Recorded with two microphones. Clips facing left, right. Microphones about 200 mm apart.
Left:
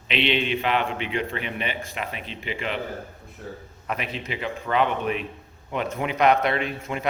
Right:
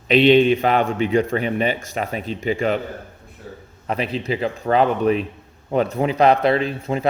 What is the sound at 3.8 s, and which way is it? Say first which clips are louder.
A man's voice: right 8 dB; 30° right (ahead or behind).